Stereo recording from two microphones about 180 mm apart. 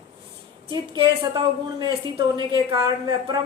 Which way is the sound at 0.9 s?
25° right (ahead or behind).